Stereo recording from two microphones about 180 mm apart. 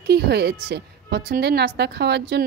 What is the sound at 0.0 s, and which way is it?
A woman's voice, 65° right (ahead or behind).